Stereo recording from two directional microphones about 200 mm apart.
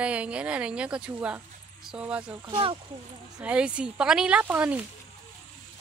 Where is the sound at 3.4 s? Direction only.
5° right (ahead or behind).